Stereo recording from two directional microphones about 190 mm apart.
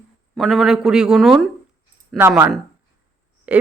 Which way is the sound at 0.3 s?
Centre (ahead or behind).